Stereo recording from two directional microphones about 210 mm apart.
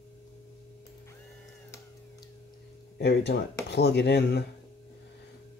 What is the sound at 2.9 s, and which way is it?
Speech, 50° left (ahead or behind).